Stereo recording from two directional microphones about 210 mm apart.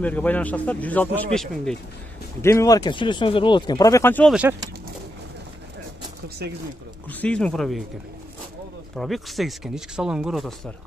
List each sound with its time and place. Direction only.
0.0 s speech: 5° left (ahead or behind)
2.4 s speech: 15° left (ahead or behind)
4.3 s speech: 5° right (ahead or behind)
6.4 s speech: 50° right (ahead or behind)
7.1 s speech: 5° left (ahead or behind)
8.9 s speech: centre (ahead or behind)